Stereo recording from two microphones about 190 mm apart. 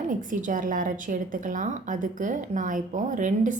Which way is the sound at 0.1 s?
45° right (ahead or behind).